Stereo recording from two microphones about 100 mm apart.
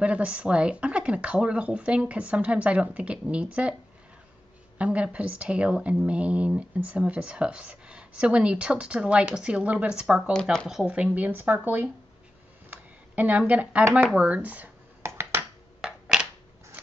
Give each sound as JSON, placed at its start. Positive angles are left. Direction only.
{"t": 0.0, "sound": "speech", "side_deg": -10}
{"t": 4.7, "sound": "speech", "side_deg": -10}
{"t": 12.6, "sound": "a sound", "side_deg": -15}
{"t": 13.9, "sound": "speech", "side_deg": -15}
{"t": 15.0, "sound": "finger snapping", "side_deg": -25}
{"t": 15.8, "sound": "a sound", "side_deg": -10}